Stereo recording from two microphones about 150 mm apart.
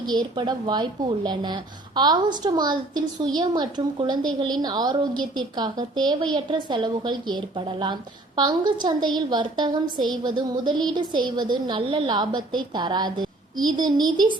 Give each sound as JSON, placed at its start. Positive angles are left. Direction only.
{"t": 0.1, "sound": "a woman's voice", "side_deg": -30}